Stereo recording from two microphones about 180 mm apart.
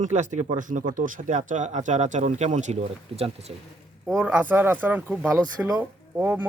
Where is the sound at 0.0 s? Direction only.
40° right (ahead or behind).